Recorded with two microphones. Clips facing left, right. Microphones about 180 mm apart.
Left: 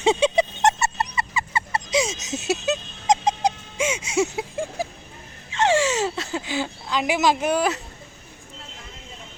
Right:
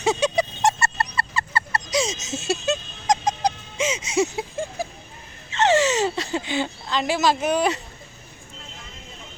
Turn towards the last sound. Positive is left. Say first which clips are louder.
# even
turn(degrees=15)  # may be behind; listen again after turning